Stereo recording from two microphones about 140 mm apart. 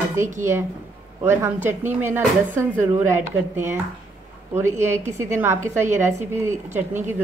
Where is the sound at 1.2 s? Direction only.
15° right (ahead or behind).